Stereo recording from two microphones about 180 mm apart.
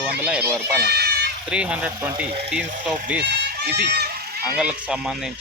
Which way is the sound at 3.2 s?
60° right (ahead or behind).